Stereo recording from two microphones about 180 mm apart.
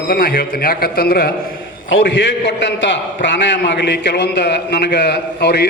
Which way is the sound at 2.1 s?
85° left.